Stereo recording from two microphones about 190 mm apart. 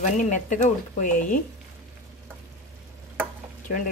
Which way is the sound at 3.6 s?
45° left (ahead or behind).